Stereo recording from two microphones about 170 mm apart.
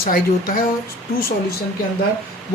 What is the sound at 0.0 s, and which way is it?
Speech, 55° left (ahead or behind).